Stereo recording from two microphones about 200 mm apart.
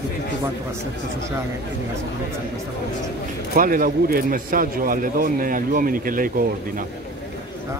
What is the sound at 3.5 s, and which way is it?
A man's voice, 45° right (ahead or behind).